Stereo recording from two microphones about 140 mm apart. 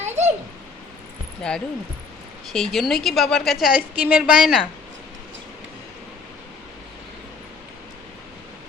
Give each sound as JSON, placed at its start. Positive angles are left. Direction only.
{"t": 0.0, "sound": "a sound", "side_deg": -55}
{"t": 1.4, "sound": "speech", "side_deg": 5}
{"t": 3.8, "sound": "a woman's voice", "side_deg": -10}